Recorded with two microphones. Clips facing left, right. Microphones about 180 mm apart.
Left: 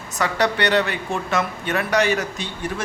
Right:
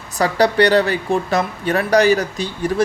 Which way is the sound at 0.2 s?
35° right (ahead or behind).